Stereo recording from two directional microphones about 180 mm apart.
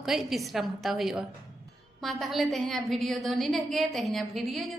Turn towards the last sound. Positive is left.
turn(degrees=0)  # may be behind; listen again after turning